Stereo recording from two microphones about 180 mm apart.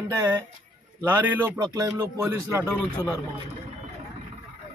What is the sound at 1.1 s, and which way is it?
Speech, 10° right (ahead or behind).